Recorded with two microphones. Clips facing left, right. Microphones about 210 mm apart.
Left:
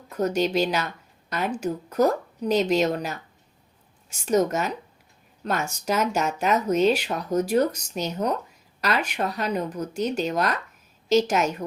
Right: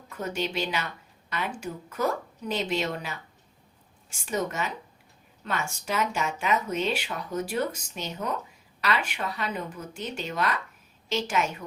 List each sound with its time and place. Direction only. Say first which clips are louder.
0.1 s a woman's voice: left 8 dB; 40° left (ahead or behind)